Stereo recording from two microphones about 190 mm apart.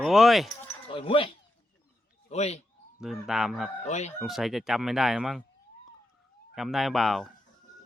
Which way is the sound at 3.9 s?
35° left (ahead or behind).